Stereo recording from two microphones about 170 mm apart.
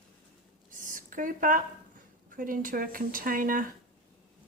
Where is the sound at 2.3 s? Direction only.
55° right (ahead or behind).